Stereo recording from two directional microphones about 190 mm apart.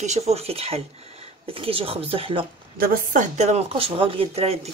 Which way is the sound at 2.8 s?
40° right (ahead or behind).